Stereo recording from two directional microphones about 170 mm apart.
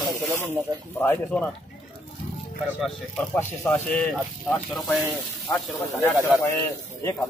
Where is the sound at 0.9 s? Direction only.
10° left (ahead or behind).